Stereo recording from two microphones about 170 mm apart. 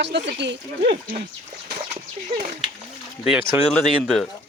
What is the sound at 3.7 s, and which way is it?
Speech, 5° left (ahead or behind).